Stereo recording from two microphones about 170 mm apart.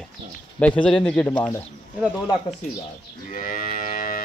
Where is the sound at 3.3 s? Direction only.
55° left (ahead or behind).